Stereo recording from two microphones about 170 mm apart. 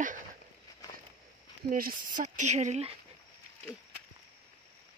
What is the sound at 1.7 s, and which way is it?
Speech, 55° right (ahead or behind).